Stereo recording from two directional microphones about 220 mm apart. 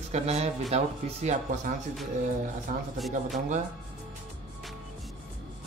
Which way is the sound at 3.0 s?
Centre (ahead or behind).